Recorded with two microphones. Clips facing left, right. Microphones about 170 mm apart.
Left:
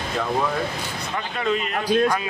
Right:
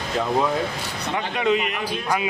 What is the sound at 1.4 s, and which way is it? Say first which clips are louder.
Speech: right 3 dB; 15° right (ahead or behind).